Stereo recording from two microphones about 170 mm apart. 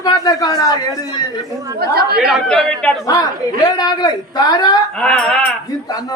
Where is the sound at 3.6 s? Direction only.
25° left (ahead or behind).